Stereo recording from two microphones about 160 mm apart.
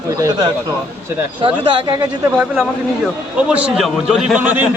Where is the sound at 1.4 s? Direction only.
35° right (ahead or behind).